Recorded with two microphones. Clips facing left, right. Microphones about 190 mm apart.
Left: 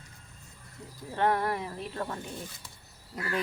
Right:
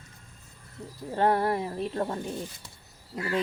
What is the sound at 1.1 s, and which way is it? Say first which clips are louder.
Speech: right 3 dB; 30° right (ahead or behind).